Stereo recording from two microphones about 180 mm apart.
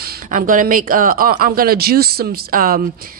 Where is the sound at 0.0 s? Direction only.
50° right (ahead or behind).